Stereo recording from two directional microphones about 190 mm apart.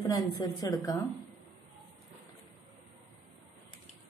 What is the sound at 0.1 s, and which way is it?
Speech, 20° left (ahead or behind).